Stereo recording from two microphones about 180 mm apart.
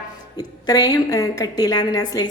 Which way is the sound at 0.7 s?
20° left (ahead or behind).